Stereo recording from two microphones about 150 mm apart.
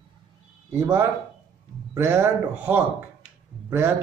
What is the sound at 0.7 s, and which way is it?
Speech, 15° right (ahead or behind).